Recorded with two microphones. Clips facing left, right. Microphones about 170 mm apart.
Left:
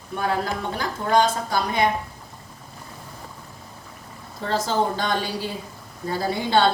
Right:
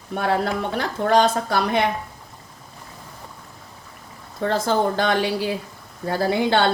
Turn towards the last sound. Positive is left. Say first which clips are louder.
# right 1 dB
turn(degrees=-65)  # may be behind; listen again after turning